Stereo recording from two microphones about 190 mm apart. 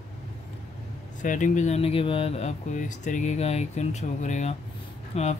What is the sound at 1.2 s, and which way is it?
Speech, 40° left (ahead or behind).